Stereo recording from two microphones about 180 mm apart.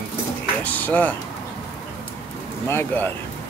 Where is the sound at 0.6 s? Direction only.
10° left (ahead or behind).